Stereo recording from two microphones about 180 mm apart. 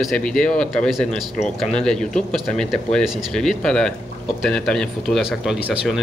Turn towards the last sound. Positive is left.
turn(degrees=0)  # may be behind; listen again after turning